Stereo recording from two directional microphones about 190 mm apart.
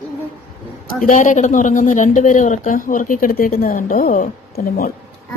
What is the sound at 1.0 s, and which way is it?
Speech, 40° left (ahead or behind).